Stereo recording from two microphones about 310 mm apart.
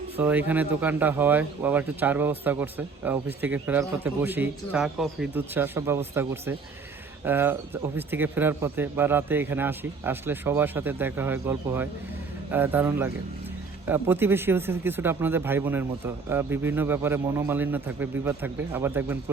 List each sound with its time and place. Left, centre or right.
0.2 s a man's voice: centre